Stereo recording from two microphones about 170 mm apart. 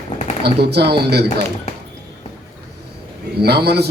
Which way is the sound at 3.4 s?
70° right (ahead or behind).